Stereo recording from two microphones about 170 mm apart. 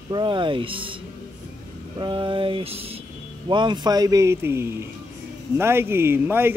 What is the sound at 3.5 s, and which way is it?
A man's voice, 25° right (ahead or behind).